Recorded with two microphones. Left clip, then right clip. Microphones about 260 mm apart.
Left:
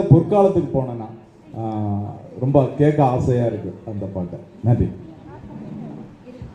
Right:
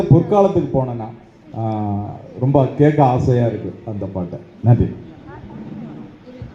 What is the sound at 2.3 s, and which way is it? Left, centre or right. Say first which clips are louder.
Speech: right 2 dB; right.